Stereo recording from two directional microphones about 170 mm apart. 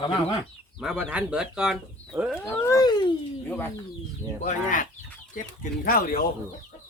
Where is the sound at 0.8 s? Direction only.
5° right (ahead or behind).